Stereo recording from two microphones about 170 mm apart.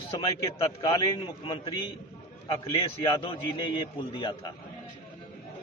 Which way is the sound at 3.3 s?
30° left (ahead or behind).